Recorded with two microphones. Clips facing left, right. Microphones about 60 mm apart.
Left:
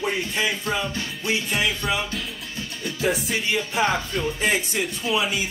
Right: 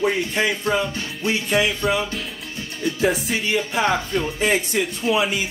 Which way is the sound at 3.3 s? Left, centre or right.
Right.